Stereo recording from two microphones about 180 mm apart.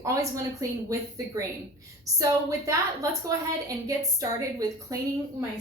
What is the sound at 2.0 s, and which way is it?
A woman's voice, 20° right (ahead or behind).